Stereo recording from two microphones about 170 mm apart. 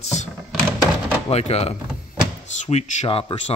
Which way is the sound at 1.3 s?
40° left (ahead or behind).